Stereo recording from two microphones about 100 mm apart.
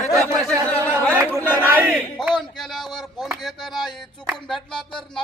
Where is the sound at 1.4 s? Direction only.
20° left (ahead or behind).